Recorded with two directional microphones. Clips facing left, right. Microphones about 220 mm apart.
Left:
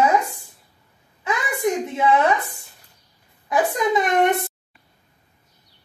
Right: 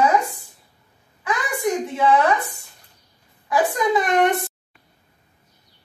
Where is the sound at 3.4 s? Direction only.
20° left (ahead or behind).